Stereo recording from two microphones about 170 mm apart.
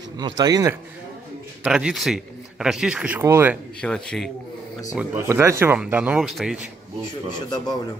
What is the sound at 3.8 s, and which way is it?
Speech, 5° left (ahead or behind).